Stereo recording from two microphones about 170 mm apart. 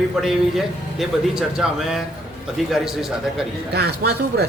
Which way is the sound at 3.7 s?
70° right (ahead or behind).